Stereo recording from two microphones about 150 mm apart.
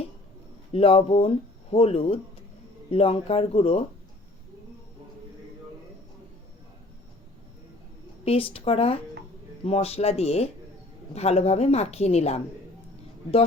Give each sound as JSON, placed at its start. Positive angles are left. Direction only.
{"t": 0.7, "sound": "speech", "side_deg": 40}
{"t": 8.2, "sound": "a woman's voice", "side_deg": 40}